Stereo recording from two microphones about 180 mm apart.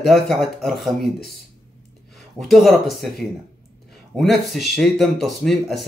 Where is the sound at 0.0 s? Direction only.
Centre (ahead or behind).